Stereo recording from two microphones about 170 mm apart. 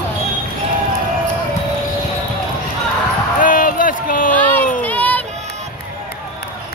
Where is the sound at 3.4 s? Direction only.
55° left (ahead or behind).